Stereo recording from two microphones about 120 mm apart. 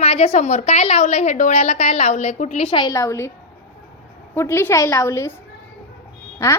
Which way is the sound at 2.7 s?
40° left (ahead or behind).